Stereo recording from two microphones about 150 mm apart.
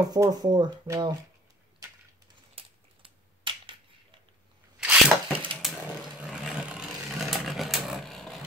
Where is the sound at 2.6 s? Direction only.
40° right (ahead or behind).